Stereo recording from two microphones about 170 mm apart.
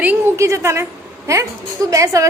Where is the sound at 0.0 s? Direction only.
10° right (ahead or behind).